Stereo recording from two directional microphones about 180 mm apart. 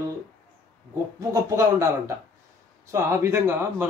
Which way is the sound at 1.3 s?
15° right (ahead or behind).